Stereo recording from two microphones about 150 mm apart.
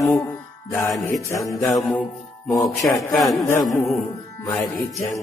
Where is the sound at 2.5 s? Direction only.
25° left (ahead or behind).